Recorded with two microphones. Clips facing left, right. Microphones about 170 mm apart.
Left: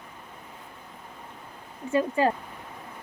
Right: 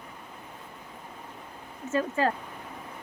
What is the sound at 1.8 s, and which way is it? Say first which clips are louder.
Speech: left 3 dB; 15° left (ahead or behind).